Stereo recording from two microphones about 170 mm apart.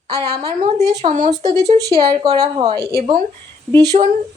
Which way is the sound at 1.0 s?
35° right (ahead or behind).